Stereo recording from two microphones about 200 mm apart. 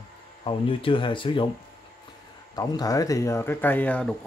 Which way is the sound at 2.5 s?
20° left (ahead or behind).